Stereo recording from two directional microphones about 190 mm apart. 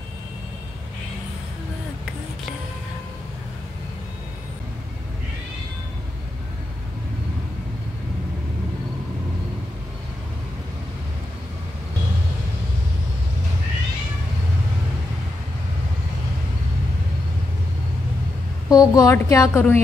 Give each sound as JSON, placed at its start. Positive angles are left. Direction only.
{"t": 18.7, "sound": "a woman's voice", "side_deg": 20}